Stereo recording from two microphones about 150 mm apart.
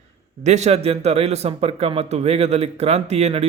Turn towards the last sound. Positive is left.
turn(degrees=-45)  # may be behind; listen again after turning